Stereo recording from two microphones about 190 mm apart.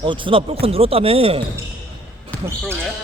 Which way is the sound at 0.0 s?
25° right (ahead or behind).